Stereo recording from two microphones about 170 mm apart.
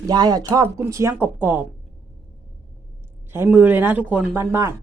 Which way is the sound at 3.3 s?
10° right (ahead or behind).